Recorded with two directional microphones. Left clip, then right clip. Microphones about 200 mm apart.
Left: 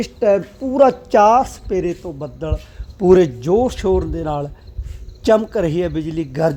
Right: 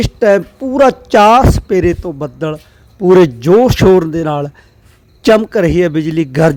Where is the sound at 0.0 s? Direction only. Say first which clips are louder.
Right 6 dB; 25° right (ahead or behind).